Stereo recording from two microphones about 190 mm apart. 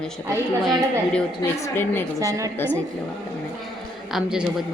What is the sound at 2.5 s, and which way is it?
Speech, 10° left (ahead or behind).